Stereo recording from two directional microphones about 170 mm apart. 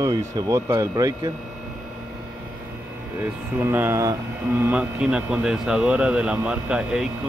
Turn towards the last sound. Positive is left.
turn(degrees=-5)  # may be behind; listen again after turning